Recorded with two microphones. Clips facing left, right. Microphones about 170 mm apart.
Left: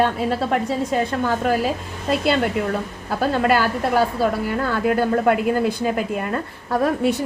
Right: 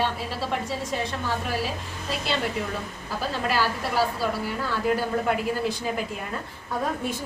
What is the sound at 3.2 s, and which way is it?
A woman's voice, 60° left (ahead or behind).